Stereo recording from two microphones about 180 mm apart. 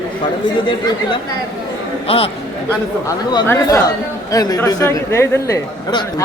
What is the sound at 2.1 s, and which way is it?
Speech, 30° left (ahead or behind).